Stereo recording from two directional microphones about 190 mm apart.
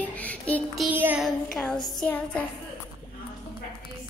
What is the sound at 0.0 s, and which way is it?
Child singing, 10° left (ahead or behind).